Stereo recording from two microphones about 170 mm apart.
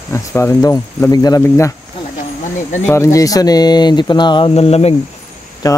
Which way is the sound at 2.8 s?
20° left (ahead or behind).